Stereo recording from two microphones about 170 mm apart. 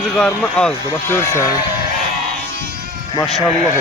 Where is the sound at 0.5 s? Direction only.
5° left (ahead or behind).